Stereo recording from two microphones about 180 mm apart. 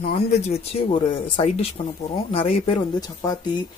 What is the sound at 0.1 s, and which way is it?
Speech, 35° left (ahead or behind).